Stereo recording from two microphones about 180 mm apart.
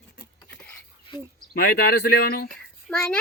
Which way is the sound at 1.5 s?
60° left (ahead or behind).